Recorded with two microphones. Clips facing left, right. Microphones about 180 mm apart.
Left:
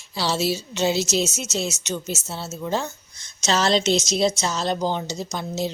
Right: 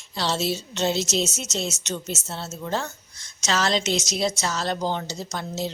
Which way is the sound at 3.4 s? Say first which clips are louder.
Left 3 dB; 30° left (ahead or behind).